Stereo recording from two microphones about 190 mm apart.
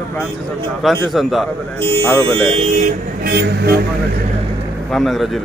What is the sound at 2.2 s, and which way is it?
Speech, 30° right (ahead or behind).